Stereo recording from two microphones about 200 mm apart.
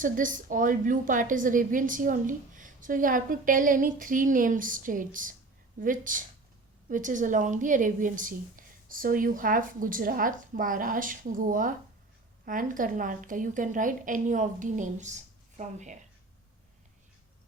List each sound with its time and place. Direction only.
0.0 s a woman's voice: 40° right (ahead or behind)